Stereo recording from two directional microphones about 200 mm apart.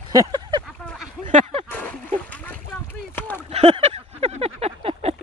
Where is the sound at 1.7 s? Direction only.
5° left (ahead or behind).